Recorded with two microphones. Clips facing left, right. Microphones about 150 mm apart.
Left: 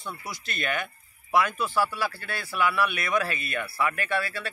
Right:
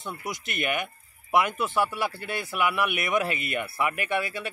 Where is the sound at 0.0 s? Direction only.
20° right (ahead or behind).